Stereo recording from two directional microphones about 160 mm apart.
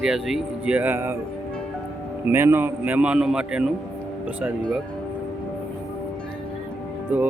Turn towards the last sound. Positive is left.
turn(degrees=-10)  # may be behind; listen again after turning